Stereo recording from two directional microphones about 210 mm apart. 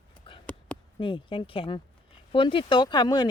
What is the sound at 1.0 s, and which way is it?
Speech, 25° left (ahead or behind).